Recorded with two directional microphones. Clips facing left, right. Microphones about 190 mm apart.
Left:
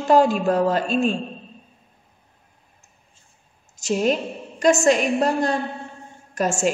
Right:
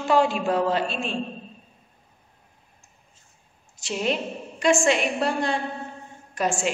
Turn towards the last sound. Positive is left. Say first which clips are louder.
# left 4 dB
turn(degrees=45)  # may be behind; listen again after turning